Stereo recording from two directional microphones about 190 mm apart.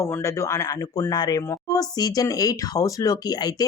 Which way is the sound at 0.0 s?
15° left (ahead or behind).